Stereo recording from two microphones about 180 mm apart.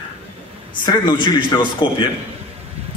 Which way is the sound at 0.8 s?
25° left (ahead or behind).